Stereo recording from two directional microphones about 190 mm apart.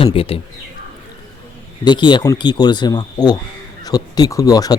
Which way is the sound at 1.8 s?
25° left (ahead or behind).